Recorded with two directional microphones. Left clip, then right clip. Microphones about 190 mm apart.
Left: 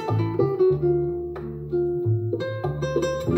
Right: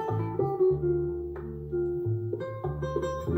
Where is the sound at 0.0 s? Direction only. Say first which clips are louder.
Left 6 dB; 30° left (ahead or behind).